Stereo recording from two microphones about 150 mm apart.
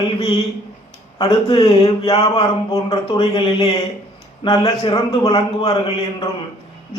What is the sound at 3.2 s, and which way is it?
A man's voice, 35° left (ahead or behind).